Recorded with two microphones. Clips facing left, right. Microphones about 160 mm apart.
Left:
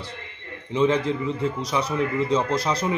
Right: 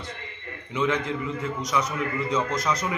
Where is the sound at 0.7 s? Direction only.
30° left (ahead or behind).